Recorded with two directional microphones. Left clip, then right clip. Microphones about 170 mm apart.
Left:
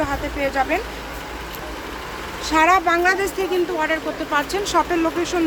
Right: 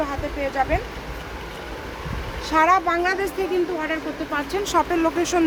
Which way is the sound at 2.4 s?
10° left (ahead or behind).